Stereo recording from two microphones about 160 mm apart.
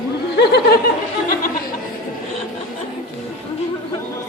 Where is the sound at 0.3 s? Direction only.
90° left.